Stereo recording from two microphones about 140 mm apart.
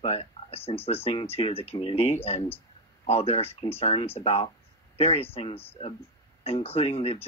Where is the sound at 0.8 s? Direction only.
45° left (ahead or behind).